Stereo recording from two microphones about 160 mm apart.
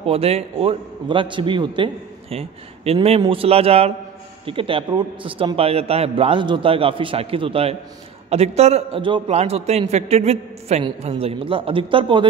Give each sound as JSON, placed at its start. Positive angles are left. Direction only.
{"t": 0.0, "sound": "a man's voice", "side_deg": -40}